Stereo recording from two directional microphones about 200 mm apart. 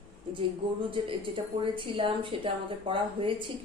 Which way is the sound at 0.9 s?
25° right (ahead or behind).